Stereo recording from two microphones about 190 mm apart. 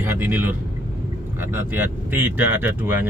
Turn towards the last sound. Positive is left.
turn(degrees=-10)  # may be behind; listen again after turning